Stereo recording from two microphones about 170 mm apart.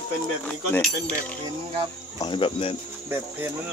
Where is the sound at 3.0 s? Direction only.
15° right (ahead or behind).